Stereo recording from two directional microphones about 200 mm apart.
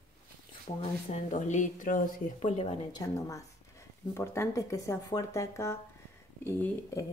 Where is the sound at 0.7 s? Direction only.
35° left (ahead or behind).